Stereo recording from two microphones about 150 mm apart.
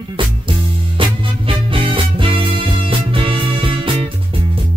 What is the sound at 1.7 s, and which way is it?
Music, 35° right (ahead or behind).